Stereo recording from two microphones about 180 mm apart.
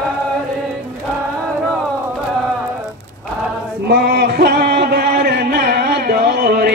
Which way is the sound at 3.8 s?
60° right (ahead or behind).